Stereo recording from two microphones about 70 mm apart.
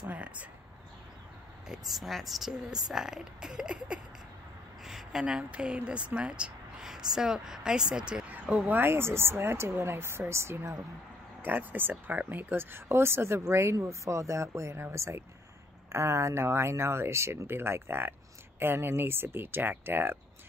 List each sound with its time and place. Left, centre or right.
0.1 s speech: right
1.7 s speech: centre
4.8 s a sound: centre
5.2 s speech: centre
8.3 s speech: right
11.4 s speech: right